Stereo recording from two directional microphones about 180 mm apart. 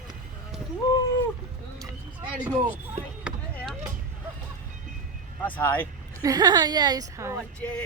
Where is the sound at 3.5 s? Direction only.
5° left (ahead or behind).